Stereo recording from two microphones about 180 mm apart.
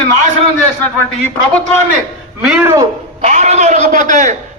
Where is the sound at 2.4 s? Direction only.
5° right (ahead or behind).